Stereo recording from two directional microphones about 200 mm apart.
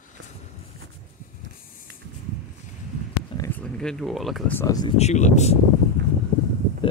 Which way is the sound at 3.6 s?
5° left (ahead or behind).